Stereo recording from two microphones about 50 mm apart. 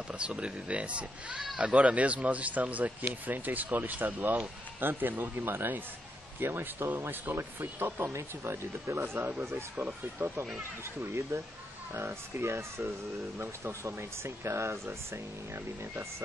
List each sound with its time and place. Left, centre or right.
0.1 s speech: right
7.8 s speech: right
8.9 s speech: right
11.9 s speech: right